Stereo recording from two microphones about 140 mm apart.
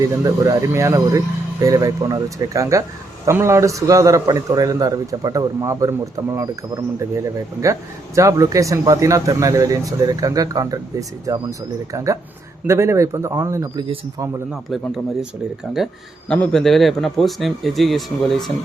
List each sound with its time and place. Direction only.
0.0 s speech: 25° right (ahead or behind)
13.7 s speech: 40° right (ahead or behind)
14.7 s speech: centre (ahead or behind)
16.3 s speech: 5° left (ahead or behind)